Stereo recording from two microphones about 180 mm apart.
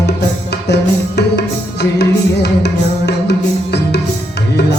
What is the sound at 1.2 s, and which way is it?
Music, 70° left (ahead or behind).